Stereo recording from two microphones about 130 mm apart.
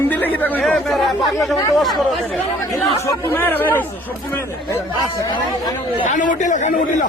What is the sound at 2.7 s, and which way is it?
Speech, 25° left (ahead or behind).